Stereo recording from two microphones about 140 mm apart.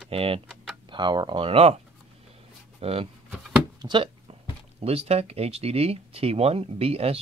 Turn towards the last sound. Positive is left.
turn(degrees=-45)  # may be behind; listen again after turning